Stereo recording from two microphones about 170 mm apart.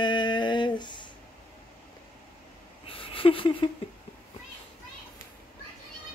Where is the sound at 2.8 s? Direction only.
30° left (ahead or behind).